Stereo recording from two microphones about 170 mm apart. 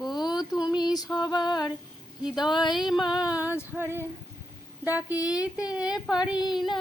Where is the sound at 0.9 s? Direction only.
25° left (ahead or behind).